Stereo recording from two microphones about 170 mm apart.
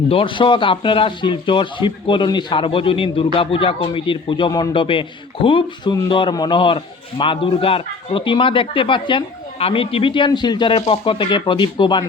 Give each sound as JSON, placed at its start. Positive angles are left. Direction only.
{"t": 0.1, "sound": "a man's voice", "side_deg": 30}